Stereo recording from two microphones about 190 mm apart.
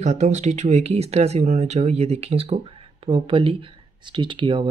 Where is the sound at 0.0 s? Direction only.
40° right (ahead or behind).